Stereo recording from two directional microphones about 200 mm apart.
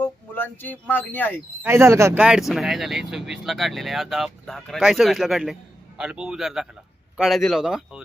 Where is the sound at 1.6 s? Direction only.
15° right (ahead or behind).